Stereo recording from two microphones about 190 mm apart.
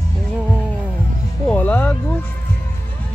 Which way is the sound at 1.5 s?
10° left (ahead or behind).